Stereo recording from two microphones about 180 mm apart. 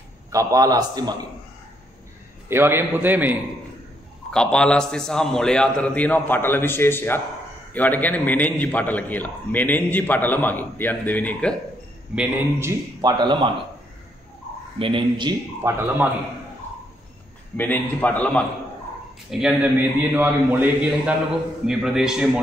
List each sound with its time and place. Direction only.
0.3 s a man's voice: 20° right (ahead or behind)
2.4 s a man's voice: 15° right (ahead or behind)
4.3 s a man's voice: 5° left (ahead or behind)
12.2 s a man's voice: 15° right (ahead or behind)
14.8 s a man's voice: 30° right (ahead or behind)
17.6 s a man's voice: 10° left (ahead or behind)
19.3 s a man's voice: 5° right (ahead or behind)